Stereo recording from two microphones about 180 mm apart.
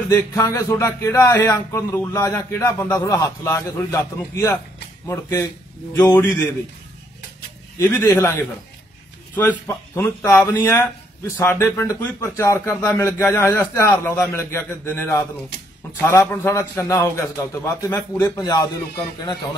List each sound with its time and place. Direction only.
0.1 s speech: 15° left (ahead or behind)
7.8 s speech: 15° left (ahead or behind)